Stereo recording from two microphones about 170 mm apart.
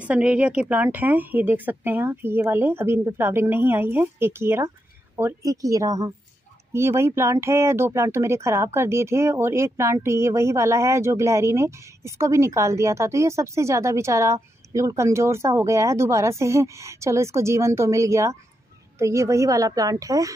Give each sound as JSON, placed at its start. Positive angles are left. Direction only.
{"t": 0.0, "sound": "a woman's voice", "side_deg": -5}